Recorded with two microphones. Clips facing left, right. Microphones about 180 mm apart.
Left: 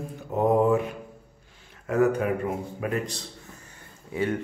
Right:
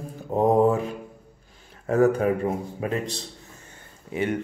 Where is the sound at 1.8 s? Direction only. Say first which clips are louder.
Right 3 dB; 35° right (ahead or behind).